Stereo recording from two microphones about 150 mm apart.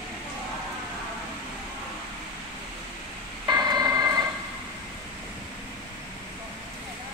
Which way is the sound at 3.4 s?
25° right (ahead or behind).